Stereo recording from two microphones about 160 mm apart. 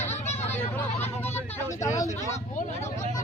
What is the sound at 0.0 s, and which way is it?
Vehicle, 45° left (ahead or behind).